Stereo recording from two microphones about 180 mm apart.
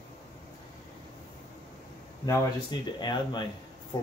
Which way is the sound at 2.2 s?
25° left (ahead or behind).